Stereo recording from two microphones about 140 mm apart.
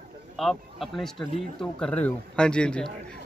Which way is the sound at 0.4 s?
Centre (ahead or behind).